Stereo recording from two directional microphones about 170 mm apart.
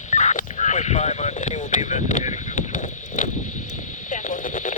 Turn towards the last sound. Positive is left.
turn(degrees=50)  # may be behind; listen again after turning